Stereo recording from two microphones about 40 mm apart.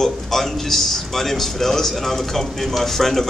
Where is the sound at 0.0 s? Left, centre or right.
Centre.